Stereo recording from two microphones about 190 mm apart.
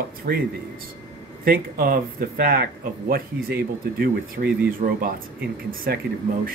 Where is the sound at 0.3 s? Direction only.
55° right (ahead or behind).